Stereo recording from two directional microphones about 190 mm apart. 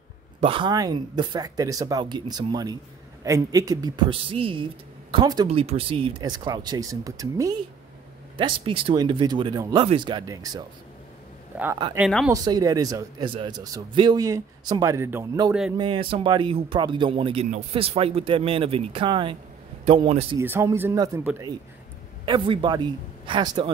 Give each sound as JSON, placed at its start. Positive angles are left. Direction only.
{"t": 0.4, "sound": "speech", "side_deg": -25}
{"t": 15.8, "sound": "a man's voice", "side_deg": -25}
{"t": 20.3, "sound": "speech", "side_deg": -15}
{"t": 22.2, "sound": "speech", "side_deg": -25}